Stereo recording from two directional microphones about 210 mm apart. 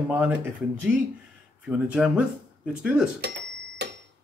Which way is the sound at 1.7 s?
5° right (ahead or behind).